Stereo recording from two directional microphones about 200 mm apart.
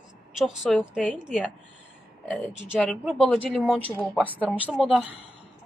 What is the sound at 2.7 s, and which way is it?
A woman's voice, centre (ahead or behind).